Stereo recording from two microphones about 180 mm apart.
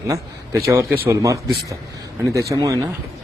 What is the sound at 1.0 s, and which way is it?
A man's voice, 15° right (ahead or behind).